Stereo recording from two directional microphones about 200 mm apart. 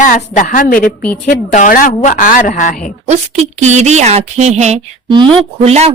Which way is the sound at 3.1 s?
35° right (ahead or behind).